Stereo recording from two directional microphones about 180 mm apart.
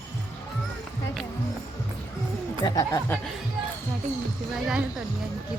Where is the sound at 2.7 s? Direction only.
20° left (ahead or behind).